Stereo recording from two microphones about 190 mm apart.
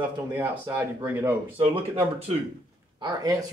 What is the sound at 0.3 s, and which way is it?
Speech, 10° right (ahead or behind).